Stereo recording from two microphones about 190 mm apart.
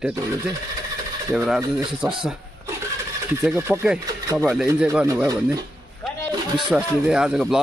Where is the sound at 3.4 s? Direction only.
15° right (ahead or behind).